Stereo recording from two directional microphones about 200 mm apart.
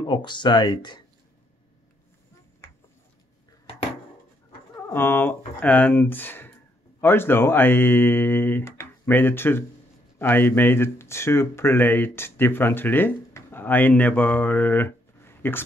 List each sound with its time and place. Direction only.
0.0 s speech: 25° left (ahead or behind)
4.8 s speech: 10° left (ahead or behind)